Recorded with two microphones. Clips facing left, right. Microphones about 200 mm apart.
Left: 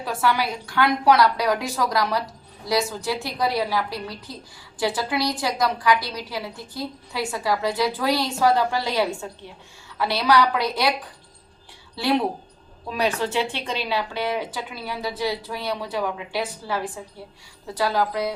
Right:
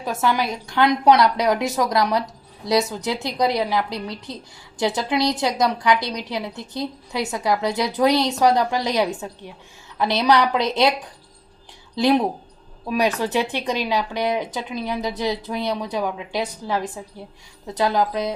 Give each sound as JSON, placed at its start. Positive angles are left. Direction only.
{"t": 0.0, "sound": "a woman's voice", "side_deg": -20}
{"t": 11.9, "sound": "a woman's voice", "side_deg": -15}